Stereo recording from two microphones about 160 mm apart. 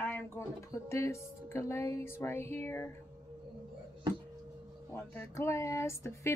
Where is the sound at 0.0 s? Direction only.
15° left (ahead or behind).